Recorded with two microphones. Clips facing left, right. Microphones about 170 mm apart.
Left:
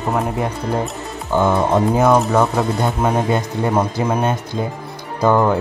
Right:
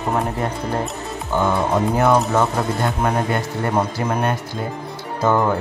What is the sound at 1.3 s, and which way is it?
Speech, 15° left (ahead or behind).